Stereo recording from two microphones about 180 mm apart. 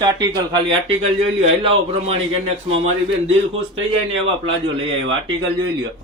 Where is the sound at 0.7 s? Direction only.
35° right (ahead or behind).